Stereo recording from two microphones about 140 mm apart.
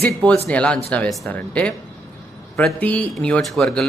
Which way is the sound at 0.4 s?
5° left (ahead or behind).